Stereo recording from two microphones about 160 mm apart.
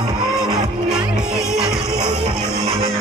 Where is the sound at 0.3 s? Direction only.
Centre (ahead or behind).